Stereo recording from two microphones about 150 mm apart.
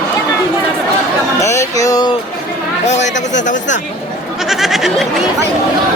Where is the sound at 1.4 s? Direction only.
20° left (ahead or behind).